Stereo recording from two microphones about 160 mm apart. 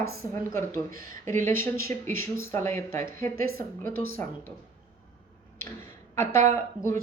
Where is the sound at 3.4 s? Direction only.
70° right (ahead or behind).